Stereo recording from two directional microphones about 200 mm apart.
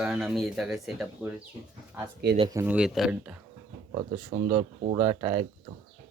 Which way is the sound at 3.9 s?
25° right (ahead or behind).